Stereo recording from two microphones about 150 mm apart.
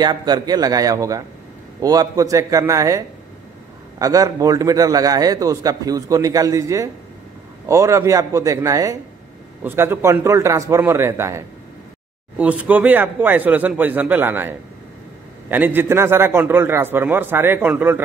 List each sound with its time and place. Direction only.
0.0 s a man's voice: 30° right (ahead or behind)
4.0 s a man's voice: 25° right (ahead or behind)
15.5 s a man's voice: 15° right (ahead or behind)